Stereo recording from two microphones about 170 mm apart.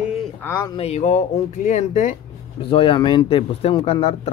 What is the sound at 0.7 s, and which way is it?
Speech, 40° left (ahead or behind).